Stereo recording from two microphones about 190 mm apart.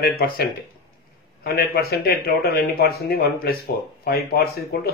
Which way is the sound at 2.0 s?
55° left (ahead or behind).